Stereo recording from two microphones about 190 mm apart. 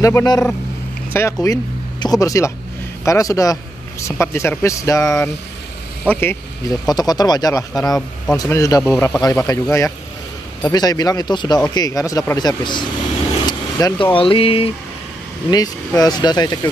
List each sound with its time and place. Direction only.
0.0 s speech: 15° left (ahead or behind)